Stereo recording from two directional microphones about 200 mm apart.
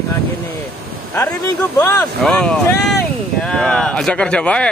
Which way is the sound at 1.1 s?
10° left (ahead or behind).